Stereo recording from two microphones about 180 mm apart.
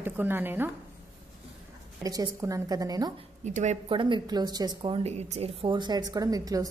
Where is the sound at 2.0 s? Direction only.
20° right (ahead or behind).